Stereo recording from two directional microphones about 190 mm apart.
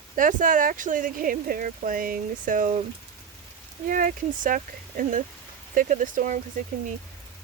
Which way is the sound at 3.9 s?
45° right (ahead or behind).